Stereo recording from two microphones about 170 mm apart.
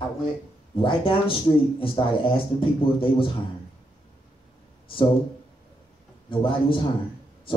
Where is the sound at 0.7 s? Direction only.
30° left (ahead or behind).